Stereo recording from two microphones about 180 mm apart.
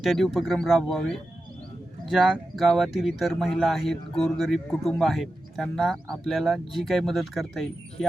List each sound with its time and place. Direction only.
0.0 s speech: centre (ahead or behind)